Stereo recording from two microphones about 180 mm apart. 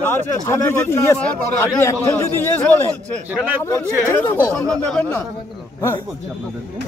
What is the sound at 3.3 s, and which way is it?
Speech, 10° right (ahead or behind).